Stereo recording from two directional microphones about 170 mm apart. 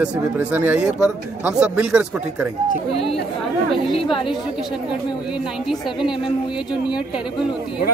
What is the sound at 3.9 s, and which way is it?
Speech, 30° left (ahead or behind).